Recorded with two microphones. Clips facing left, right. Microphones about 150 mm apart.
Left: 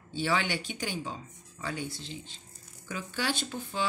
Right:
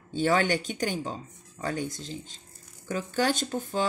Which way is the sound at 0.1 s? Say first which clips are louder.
Right 6 dB; 50° right (ahead or behind).